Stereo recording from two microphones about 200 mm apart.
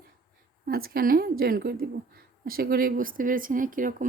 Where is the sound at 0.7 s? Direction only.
50° right (ahead or behind).